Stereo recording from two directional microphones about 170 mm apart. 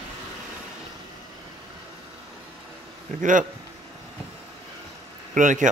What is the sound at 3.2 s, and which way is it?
Speech, 50° right (ahead or behind).